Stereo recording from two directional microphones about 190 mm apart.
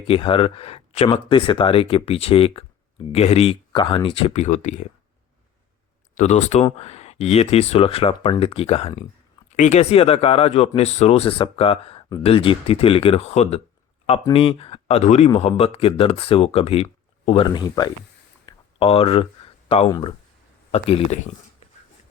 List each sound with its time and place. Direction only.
0.1 s speech: 30° left (ahead or behind)
6.1 s speech: 35° left (ahead or behind)
18.4 s a sound: 30° left (ahead or behind)
19.9 s speech: 25° left (ahead or behind)